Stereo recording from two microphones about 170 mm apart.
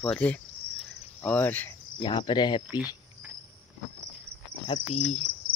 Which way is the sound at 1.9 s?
30° left (ahead or behind).